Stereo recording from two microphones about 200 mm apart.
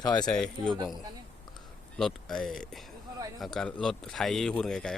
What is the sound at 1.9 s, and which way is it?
Speech, centre (ahead or behind).